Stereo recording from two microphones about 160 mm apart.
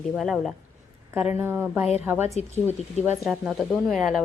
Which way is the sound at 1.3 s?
15° right (ahead or behind).